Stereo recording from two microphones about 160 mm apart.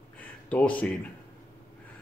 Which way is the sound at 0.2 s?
10° left (ahead or behind).